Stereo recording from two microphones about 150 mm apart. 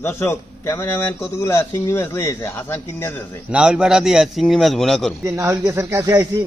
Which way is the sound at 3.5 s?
5° right (ahead or behind).